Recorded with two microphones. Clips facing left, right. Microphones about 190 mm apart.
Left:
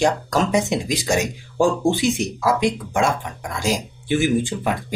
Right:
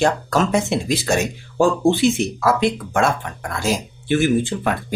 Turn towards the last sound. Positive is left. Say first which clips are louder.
# right 1 dB
turn(degrees=15)  # may be behind; listen again after turning